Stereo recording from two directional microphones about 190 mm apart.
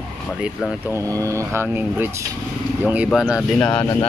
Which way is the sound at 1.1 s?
15° right (ahead or behind).